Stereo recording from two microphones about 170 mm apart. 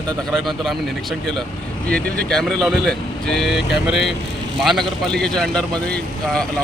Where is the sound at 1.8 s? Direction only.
5° left (ahead or behind).